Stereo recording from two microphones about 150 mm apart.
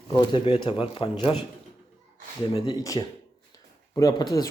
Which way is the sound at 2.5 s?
35° left (ahead or behind).